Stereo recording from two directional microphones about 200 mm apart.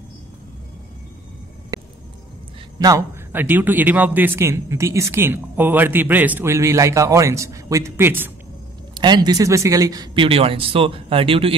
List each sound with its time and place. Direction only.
1.7 s a sound: 15° right (ahead or behind)
2.8 s speech: 15° right (ahead or behind)
8.9 s speech: 20° right (ahead or behind)